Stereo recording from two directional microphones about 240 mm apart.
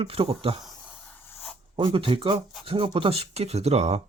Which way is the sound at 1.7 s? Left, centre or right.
Right.